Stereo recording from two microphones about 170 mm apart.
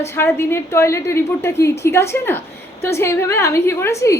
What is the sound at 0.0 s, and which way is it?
A woman's voice, 15° left (ahead or behind).